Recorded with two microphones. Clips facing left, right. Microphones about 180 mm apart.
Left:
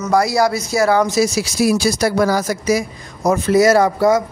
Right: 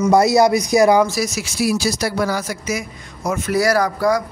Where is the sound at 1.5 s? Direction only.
50° left (ahead or behind); by 3.5 s 35° left (ahead or behind).